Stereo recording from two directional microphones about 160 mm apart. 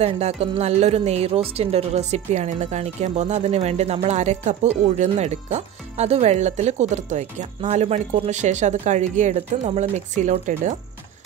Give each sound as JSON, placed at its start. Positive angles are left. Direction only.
{"t": 0.0, "sound": "a woman's voice", "side_deg": -40}